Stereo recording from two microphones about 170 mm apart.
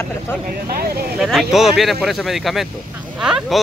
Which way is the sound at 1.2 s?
Centre (ahead or behind).